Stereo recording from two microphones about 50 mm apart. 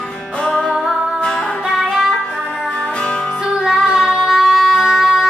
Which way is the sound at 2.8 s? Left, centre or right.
Centre.